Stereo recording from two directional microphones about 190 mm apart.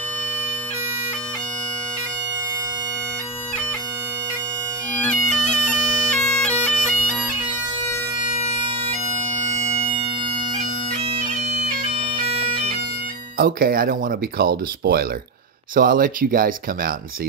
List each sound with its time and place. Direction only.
5.0 s bagpipes: 5° left (ahead or behind)
9.3 s bagpipes: 35° right (ahead or behind)
13.4 s speech: 50° right (ahead or behind)